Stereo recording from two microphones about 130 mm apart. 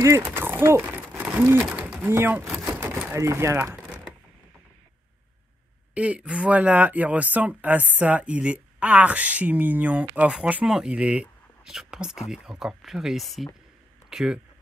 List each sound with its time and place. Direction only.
0.0 s speech: 20° right (ahead or behind)
2.5 s crumpling: 15° right (ahead or behind)
5.9 s speech: 10° right (ahead or behind)